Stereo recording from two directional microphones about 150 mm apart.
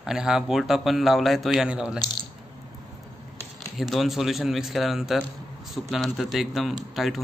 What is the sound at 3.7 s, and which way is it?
A man's voice, centre (ahead or behind).